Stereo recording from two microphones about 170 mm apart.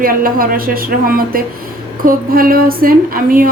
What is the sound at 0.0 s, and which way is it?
Speech, 55° right (ahead or behind).